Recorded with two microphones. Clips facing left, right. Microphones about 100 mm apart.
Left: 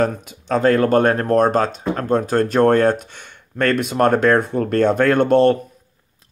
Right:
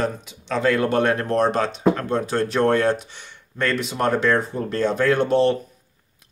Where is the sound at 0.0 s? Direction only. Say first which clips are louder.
Left 5 dB; 50° left (ahead or behind).